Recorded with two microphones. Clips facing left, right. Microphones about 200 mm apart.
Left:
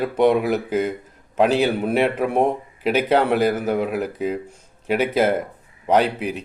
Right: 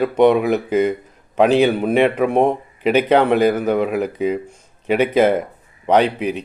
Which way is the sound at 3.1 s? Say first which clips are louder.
Right 3 dB; 5° left (ahead or behind).